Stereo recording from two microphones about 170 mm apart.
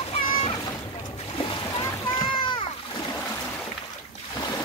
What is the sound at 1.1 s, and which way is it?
Boat, 35° left (ahead or behind).